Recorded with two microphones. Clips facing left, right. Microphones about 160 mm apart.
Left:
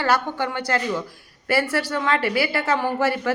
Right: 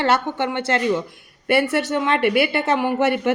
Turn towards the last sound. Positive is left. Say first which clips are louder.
# right 3 dB
turn(degrees=-20)  # may be behind; listen again after turning